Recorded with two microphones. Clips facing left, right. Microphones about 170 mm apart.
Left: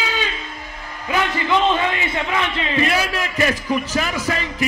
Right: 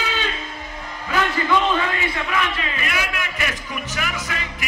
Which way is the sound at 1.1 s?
20° left (ahead or behind).